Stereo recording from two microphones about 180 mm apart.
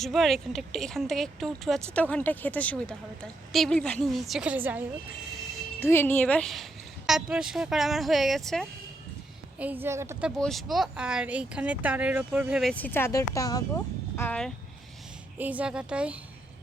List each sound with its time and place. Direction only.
0.0 s speech: centre (ahead or behind)
5.3 s a sound: centre (ahead or behind)
5.8 s speech: 10° left (ahead or behind)
9.6 s a woman's voice: 10° right (ahead or behind)
12.7 s speech: 10° left (ahead or behind)
14.3 s speech: 5° left (ahead or behind)
15.4 s a woman's voice: 10° right (ahead or behind)